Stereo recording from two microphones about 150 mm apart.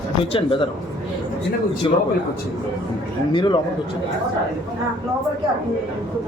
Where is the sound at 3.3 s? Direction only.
30° left (ahead or behind).